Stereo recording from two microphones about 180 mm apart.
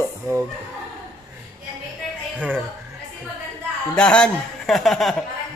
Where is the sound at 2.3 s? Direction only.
10° right (ahead or behind).